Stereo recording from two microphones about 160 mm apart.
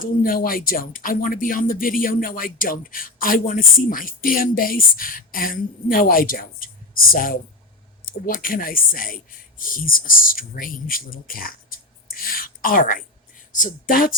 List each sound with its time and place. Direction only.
0.0 s speech: 60° left (ahead or behind)